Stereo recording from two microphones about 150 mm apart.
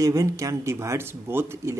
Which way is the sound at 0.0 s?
20° right (ahead or behind).